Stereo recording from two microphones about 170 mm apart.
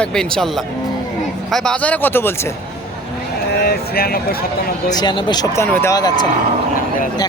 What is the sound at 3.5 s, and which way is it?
Speech, 65° left (ahead or behind).